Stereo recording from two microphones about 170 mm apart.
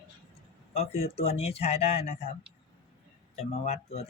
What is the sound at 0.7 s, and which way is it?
Speech, 40° left (ahead or behind).